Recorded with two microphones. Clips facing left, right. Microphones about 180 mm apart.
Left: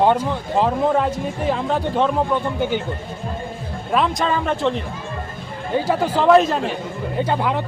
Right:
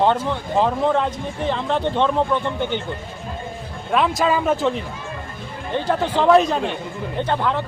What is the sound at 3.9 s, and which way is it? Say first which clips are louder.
Speech: right 1 dB; centre (ahead or behind).